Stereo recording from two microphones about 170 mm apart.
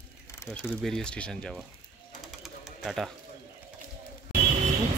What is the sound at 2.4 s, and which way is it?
Pigeon, centre (ahead or behind).